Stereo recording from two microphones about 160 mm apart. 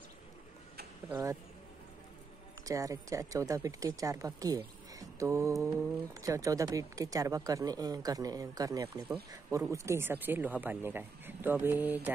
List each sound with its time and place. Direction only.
1.1 s speech: 15° right (ahead or behind)
2.6 s speech: 20° right (ahead or behind)